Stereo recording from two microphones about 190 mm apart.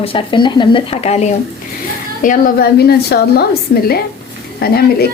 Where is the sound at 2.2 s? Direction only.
50° left (ahead or behind).